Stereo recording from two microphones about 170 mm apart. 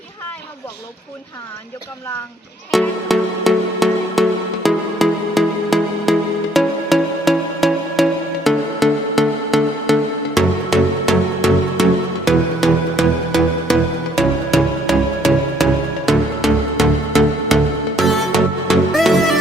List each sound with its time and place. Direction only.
2.7 s music: centre (ahead or behind)